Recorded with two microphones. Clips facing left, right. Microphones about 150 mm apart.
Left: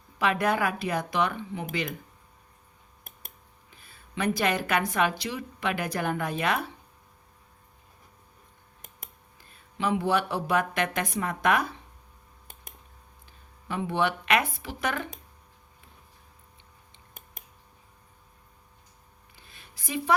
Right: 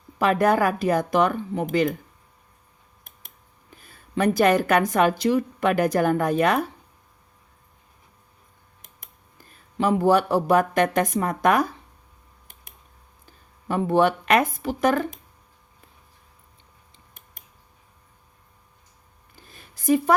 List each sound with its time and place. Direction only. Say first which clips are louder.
0.2 s a woman's voice: right 6 dB; 45° right (ahead or behind)
3.7 s a woman's voice: right 7 dB; 45° right (ahead or behind)
9.4 s speech: right 6 dB; 40° right (ahead or behind)
13.2 s speech: right 8 dB; 40° right (ahead or behind)
19.4 s a sound: right 4 dB; 40° right (ahead or behind)